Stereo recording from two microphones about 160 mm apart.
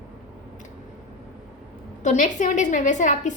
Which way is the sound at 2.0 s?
50° left (ahead or behind).